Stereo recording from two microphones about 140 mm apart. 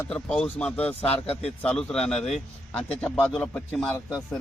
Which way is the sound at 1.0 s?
45° left (ahead or behind).